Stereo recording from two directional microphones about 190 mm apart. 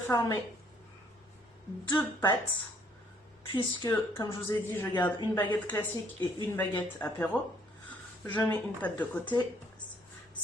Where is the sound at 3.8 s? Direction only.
20° left (ahead or behind).